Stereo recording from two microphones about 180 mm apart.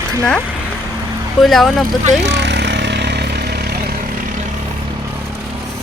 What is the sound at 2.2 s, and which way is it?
Vehicle, 75° right (ahead or behind).